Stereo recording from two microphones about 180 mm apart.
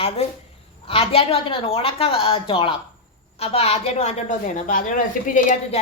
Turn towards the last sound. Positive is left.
turn(degrees=45)  # may be behind; listen again after turning